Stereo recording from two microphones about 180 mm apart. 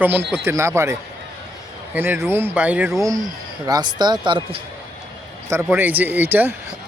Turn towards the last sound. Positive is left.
turn(degrees=-10)  # may be behind; listen again after turning